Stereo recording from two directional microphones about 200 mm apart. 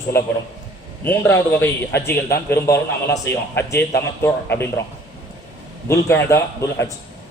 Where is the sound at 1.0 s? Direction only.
10° left (ahead or behind).